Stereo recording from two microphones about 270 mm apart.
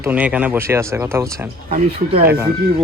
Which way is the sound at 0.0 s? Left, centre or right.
Centre.